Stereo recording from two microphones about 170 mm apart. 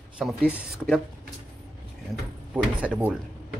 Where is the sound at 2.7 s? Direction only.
5° right (ahead or behind).